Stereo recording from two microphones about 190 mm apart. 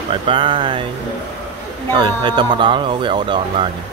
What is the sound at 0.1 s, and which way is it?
Speech, 25° right (ahead or behind).